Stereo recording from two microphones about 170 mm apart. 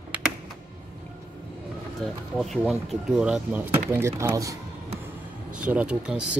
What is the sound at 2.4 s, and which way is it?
Speech, centre (ahead or behind).